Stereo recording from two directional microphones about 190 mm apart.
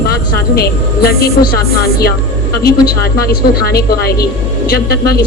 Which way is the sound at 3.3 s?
55° left (ahead or behind).